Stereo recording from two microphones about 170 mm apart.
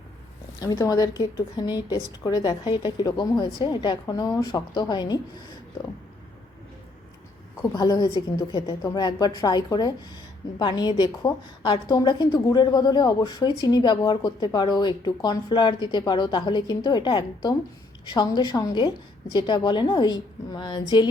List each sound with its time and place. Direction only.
0.6 s a woman's voice: 20° left (ahead or behind)
7.5 s a woman's voice: 20° left (ahead or behind)